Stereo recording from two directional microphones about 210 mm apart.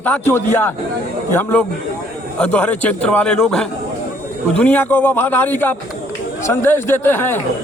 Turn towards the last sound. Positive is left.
turn(degrees=10)  # may be behind; listen again after turning